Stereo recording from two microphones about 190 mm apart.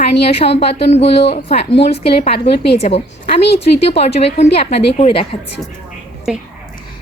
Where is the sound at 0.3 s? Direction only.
30° left (ahead or behind).